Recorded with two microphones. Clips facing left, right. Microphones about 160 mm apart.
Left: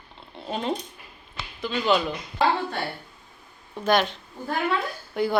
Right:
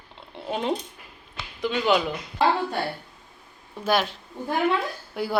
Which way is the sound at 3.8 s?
5° right (ahead or behind).